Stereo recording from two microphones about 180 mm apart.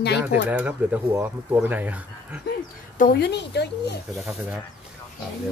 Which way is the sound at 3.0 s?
60° left (ahead or behind).